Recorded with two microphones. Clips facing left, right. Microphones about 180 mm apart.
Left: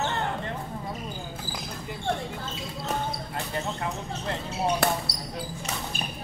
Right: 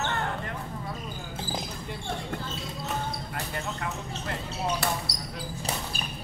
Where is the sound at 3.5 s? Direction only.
25° left (ahead or behind).